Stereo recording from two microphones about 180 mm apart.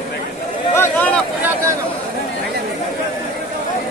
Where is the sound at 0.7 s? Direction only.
10° left (ahead or behind).